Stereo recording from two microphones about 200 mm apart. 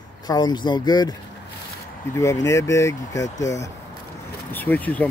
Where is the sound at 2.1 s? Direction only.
15° left (ahead or behind).